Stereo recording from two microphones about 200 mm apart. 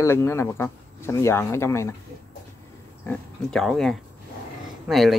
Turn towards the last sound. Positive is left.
turn(degrees=0)  # may be behind; listen again after turning